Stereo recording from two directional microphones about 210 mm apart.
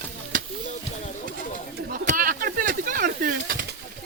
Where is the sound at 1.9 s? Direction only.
40° right (ahead or behind).